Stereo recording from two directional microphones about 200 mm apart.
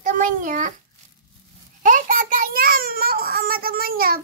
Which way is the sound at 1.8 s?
40° right (ahead or behind).